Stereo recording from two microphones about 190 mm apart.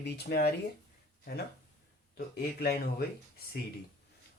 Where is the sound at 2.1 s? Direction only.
50° left (ahead or behind).